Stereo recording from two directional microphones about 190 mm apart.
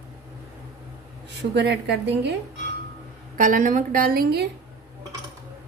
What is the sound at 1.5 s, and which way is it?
Speech, 65° right (ahead or behind).